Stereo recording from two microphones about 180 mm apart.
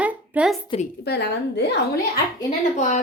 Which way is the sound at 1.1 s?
65° left (ahead or behind).